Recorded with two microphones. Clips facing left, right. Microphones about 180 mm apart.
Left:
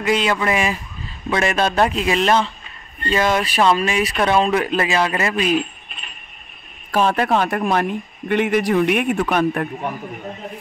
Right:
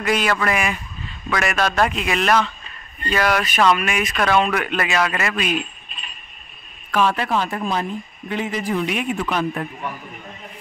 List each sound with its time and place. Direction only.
0.0 s speech: 20° left (ahead or behind)
6.9 s speech: 45° left (ahead or behind); by 9.7 s 60° left (ahead or behind)